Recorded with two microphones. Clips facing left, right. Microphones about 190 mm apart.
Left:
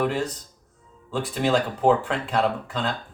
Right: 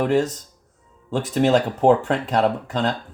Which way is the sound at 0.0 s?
45° right (ahead or behind).